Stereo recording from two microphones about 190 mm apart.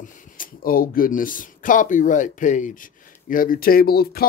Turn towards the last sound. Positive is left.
turn(degrees=55)  # may be behind; listen again after turning